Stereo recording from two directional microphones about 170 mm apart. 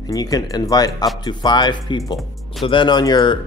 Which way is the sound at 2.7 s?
25° left (ahead or behind).